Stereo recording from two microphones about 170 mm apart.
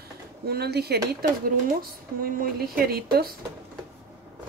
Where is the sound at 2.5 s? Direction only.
65° right (ahead or behind).